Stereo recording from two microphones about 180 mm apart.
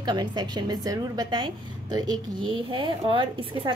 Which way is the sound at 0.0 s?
25° right (ahead or behind).